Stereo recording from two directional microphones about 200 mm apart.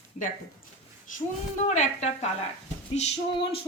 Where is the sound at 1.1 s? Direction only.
40° left (ahead or behind).